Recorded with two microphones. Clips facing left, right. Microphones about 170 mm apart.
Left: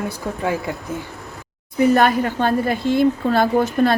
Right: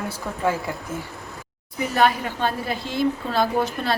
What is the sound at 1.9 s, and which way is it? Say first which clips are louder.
A woman's voice: left 4 dB; 50° left (ahead or behind).